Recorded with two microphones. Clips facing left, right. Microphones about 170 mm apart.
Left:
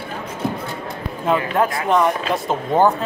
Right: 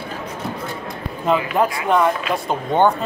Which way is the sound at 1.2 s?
Centre (ahead or behind).